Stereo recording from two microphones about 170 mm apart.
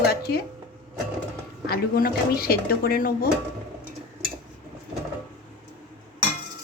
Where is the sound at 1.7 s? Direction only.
60° left (ahead or behind).